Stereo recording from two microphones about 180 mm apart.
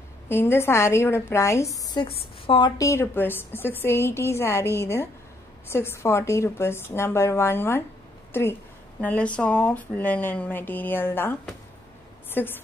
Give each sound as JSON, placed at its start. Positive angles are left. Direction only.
{"t": 0.3, "sound": "a woman's voice", "side_deg": 15}
{"t": 2.8, "sound": "a woman's voice", "side_deg": 15}